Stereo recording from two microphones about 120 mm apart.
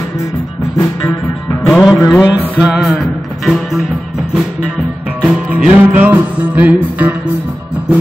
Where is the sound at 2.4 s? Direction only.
10° right (ahead or behind).